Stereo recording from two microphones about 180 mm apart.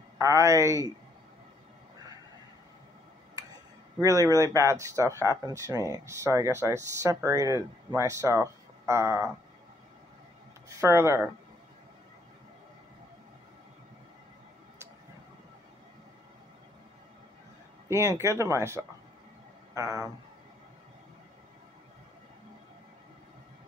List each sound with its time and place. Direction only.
0.2 s speech: 15° right (ahead or behind)
4.0 s speech: 20° right (ahead or behind)
10.8 s speech: 15° right (ahead or behind)
17.8 s speech: 15° right (ahead or behind)